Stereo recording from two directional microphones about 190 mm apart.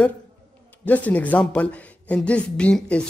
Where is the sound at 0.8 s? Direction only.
10° left (ahead or behind).